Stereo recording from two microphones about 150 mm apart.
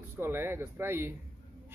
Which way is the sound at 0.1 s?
15° right (ahead or behind).